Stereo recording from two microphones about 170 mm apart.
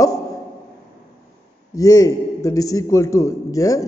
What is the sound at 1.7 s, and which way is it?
A man's voice, 20° left (ahead or behind).